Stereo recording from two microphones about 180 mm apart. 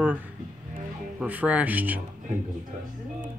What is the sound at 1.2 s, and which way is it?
Speech, 10° right (ahead or behind).